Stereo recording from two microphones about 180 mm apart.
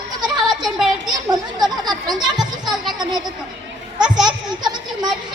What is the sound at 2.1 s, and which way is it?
Children playing, 25° right (ahead or behind).